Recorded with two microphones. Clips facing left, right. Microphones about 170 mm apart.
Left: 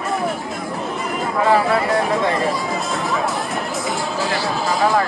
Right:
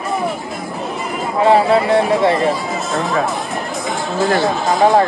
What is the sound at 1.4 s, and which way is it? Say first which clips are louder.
Speech: right 5 dB; 25° right (ahead or behind).